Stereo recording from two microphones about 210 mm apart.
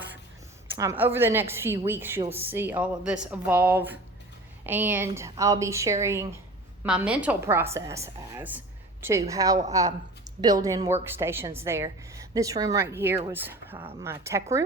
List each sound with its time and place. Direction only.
0.8 s a woman's voice: 10° right (ahead or behind)